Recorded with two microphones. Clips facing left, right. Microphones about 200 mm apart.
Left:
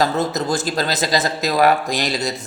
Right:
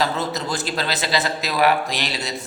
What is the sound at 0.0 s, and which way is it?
A man's voice, 45° left (ahead or behind).